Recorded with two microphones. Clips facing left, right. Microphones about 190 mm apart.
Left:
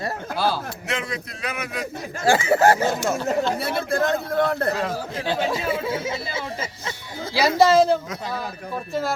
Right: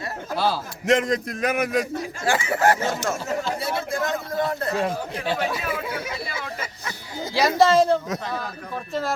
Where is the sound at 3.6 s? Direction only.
65° left (ahead or behind).